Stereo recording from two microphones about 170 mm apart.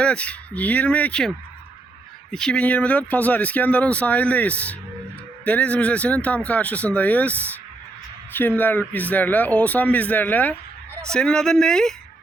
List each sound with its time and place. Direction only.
0.0 s speech: 5° left (ahead or behind)
2.3 s speech: 5° left (ahead or behind)